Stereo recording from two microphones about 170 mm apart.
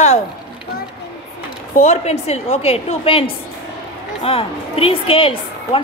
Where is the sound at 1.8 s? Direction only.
40° left (ahead or behind).